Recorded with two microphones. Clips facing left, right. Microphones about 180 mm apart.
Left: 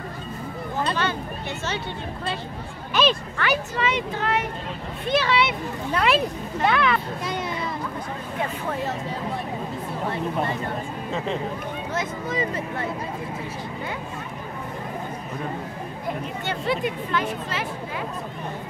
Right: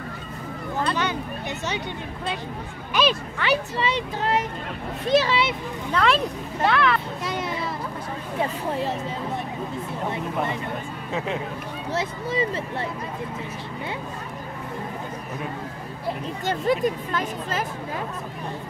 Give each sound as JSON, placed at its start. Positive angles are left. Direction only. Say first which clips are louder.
{"t": 2.9, "sound": "speech", "louder": "left 1 dB", "side_deg": -10}
{"t": 3.4, "sound": "a child's voice", "louder": "right 1 dB", "side_deg": -30}
{"t": 5.9, "sound": "a child's voice", "louder": "even", "side_deg": 5}
{"t": 11.9, "sound": "speech", "louder": "right 3 dB", "side_deg": -30}
{"t": 16.4, "sound": "speech", "louder": "right 4 dB", "side_deg": -40}